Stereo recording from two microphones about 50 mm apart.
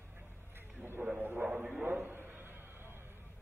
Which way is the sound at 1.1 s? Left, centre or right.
Right.